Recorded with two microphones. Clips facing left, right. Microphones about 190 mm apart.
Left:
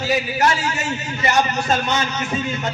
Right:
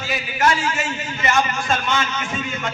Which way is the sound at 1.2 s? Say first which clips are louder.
Left 2 dB; 40° left (ahead or behind).